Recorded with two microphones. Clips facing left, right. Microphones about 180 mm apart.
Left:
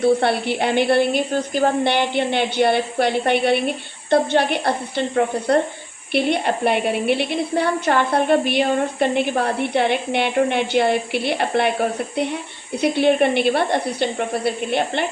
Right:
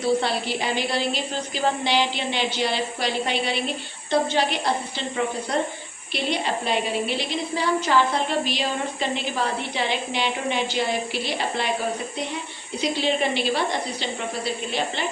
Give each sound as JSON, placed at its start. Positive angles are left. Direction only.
{"t": 0.0, "sound": "a woman's voice", "side_deg": 60}